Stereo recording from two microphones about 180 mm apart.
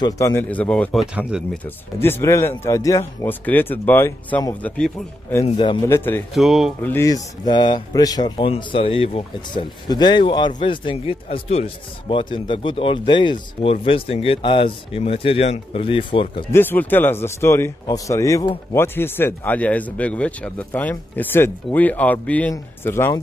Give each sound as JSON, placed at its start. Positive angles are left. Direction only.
{"t": 0.0, "sound": "speech", "side_deg": 15}
{"t": 1.6, "sound": "speech", "side_deg": 10}
{"t": 5.6, "sound": "speech", "side_deg": 25}
{"t": 5.9, "sound": "speech", "side_deg": 10}
{"t": 6.3, "sound": "speech", "side_deg": 0}
{"t": 6.8, "sound": "speech", "side_deg": 15}
{"t": 16.5, "sound": "speech", "side_deg": 10}